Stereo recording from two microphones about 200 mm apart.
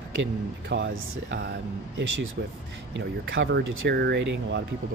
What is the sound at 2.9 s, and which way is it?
Speech, 65° right (ahead or behind).